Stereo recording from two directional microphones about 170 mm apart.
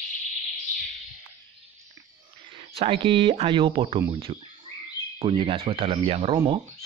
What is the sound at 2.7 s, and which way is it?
Speech, 35° right (ahead or behind).